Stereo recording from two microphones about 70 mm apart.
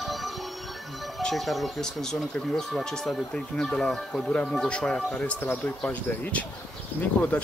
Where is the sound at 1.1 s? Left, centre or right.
Centre.